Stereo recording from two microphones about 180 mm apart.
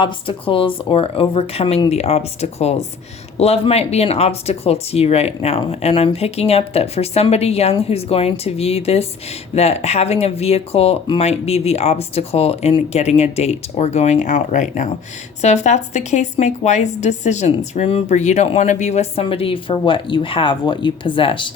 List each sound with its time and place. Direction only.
0.0 s a woman's voice: 30° left (ahead or behind)